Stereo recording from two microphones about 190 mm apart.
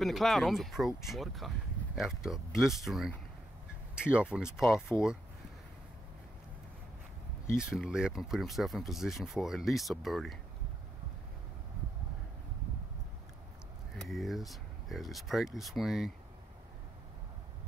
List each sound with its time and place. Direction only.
0.0 s speech: centre (ahead or behind)
7.5 s speech: 5° right (ahead or behind)
13.9 s speech: centre (ahead or behind)